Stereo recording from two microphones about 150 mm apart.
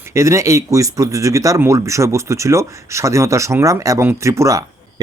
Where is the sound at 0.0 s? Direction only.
20° right (ahead or behind).